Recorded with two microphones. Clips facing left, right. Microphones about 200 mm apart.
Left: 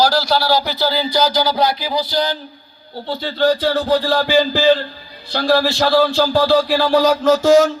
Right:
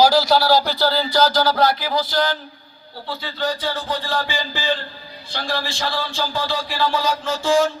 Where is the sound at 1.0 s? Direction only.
15° left (ahead or behind).